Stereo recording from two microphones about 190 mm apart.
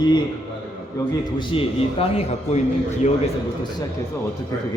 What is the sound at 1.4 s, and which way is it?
A man's voice, 30° left (ahead or behind).